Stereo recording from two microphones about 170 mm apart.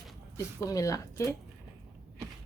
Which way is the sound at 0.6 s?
20° left (ahead or behind).